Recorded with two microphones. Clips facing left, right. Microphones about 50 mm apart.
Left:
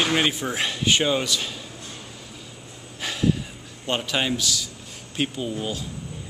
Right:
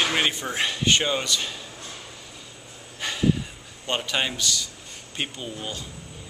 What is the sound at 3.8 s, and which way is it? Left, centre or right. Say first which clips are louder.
Speech: left 2 dB; centre.